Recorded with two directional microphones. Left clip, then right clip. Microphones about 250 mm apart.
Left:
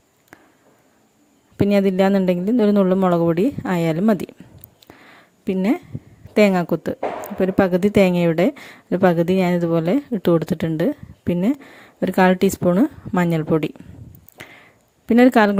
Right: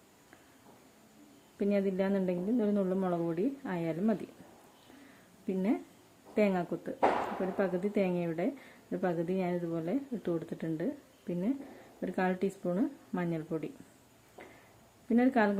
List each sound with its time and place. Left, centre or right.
1.5 s a woman's voice: left
5.5 s a woman's voice: left
15.1 s a woman's voice: left